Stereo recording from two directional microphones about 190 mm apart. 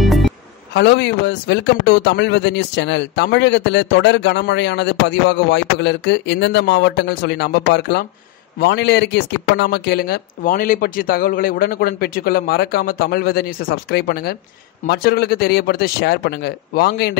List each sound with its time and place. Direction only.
0.0 s music: centre (ahead or behind)
0.7 s speech: 65° left (ahead or behind)